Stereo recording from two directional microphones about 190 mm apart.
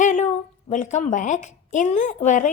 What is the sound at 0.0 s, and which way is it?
A woman's voice, 40° left (ahead or behind).